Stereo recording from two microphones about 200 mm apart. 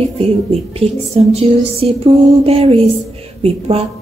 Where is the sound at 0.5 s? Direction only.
30° right (ahead or behind).